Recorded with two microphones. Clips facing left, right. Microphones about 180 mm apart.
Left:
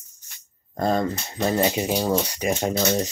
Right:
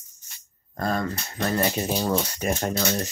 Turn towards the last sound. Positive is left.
turn(degrees=10)  # may be behind; listen again after turning